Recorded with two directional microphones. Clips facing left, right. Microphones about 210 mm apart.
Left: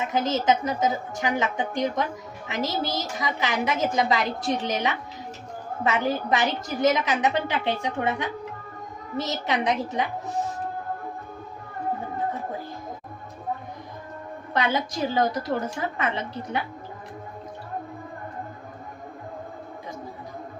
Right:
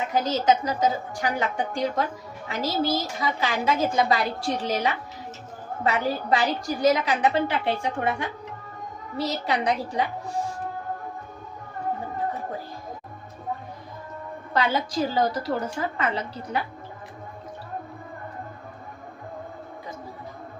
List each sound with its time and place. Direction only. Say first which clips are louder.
0.1 s a woman's voice: right 1 dB; 25° left (ahead or behind)
14.5 s a woman's voice: right 1 dB; 20° left (ahead or behind)